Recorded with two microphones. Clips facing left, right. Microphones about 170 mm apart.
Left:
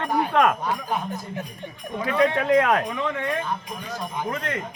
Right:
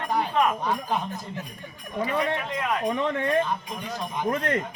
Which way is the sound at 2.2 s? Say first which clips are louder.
Left 9 dB; 80° left.